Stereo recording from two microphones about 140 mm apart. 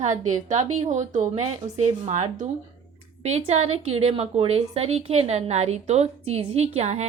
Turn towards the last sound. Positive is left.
turn(degrees=-50)  # may be behind; listen again after turning